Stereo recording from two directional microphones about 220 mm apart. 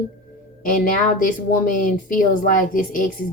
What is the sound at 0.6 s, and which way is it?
A woman's voice, 40° left (ahead or behind).